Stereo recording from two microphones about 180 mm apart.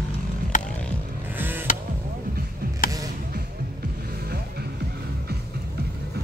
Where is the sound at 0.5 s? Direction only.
45° left (ahead or behind).